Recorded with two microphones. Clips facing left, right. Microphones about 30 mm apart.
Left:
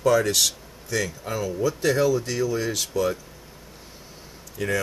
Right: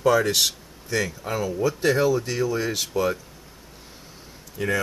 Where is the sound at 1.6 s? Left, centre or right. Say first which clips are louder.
Even; right.